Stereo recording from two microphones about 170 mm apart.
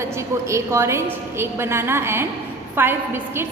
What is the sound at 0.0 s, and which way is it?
A woman's voice, 15° right (ahead or behind).